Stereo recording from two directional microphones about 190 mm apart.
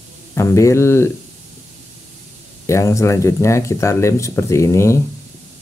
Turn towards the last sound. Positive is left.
turn(degrees=15)  # may be behind; listen again after turning